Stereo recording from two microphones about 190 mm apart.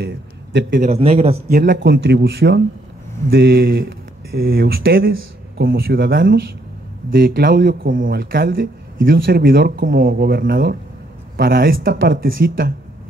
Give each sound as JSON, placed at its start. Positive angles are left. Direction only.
{"t": 0.0, "sound": "a man's voice", "side_deg": -70}
{"t": 0.8, "sound": "a man's voice", "side_deg": -35}
{"t": 1.5, "sound": "a man's voice", "side_deg": -65}